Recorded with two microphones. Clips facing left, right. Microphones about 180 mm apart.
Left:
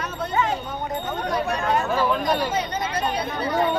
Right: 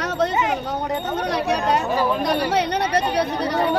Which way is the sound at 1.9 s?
15° right (ahead or behind).